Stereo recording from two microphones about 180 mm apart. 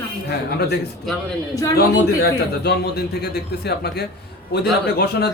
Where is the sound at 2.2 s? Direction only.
60° left (ahead or behind).